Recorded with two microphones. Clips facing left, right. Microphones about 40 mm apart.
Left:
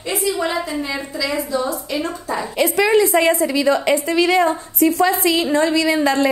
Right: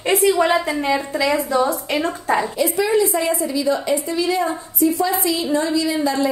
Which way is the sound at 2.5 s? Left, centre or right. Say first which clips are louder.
Left 3 dB; left.